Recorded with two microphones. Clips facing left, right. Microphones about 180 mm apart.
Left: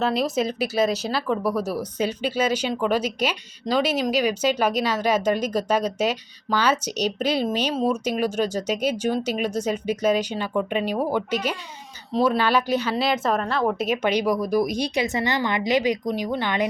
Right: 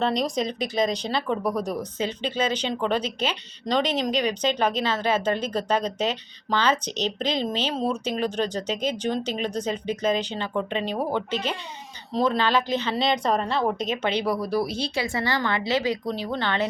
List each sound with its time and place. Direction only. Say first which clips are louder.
0.0 s speech: left 2 dB; 5° left (ahead or behind)